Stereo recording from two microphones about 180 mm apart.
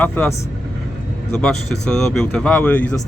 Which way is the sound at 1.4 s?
5° left (ahead or behind).